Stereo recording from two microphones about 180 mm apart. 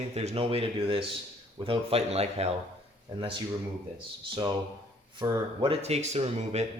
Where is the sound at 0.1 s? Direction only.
35° right (ahead or behind).